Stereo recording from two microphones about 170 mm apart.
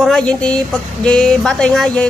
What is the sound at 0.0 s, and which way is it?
Speech, 5° left (ahead or behind).